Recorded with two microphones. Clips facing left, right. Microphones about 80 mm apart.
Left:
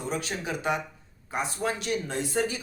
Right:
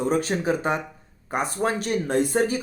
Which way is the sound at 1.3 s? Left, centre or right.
Right.